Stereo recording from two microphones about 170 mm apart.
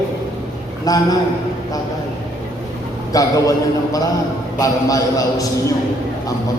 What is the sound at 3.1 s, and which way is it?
A man's voice, 20° left (ahead or behind).